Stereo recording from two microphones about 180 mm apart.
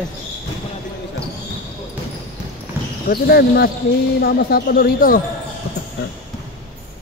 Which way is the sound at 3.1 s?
60° left (ahead or behind).